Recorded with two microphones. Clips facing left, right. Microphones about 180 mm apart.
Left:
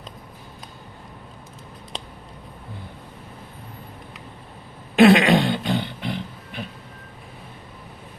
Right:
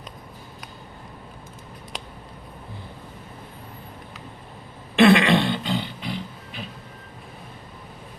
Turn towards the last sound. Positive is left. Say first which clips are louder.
# left 2 dB
turn(degrees=55)  # may be behind; listen again after turning